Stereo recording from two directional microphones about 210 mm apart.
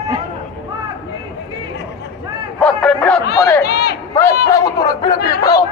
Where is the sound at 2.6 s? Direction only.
5° left (ahead or behind).